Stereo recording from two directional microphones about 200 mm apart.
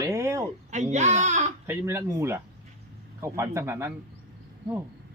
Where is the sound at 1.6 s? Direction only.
15° right (ahead or behind).